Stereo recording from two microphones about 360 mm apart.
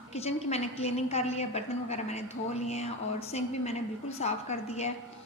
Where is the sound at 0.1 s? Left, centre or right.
Centre.